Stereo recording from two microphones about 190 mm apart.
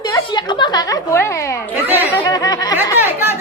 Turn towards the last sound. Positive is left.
turn(degrees=-10)  # may be behind; listen again after turning